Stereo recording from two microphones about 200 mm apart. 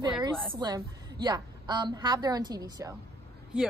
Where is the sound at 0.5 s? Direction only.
20° right (ahead or behind).